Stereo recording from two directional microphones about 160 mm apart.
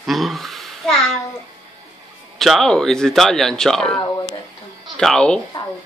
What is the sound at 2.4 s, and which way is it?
Speech, centre (ahead or behind).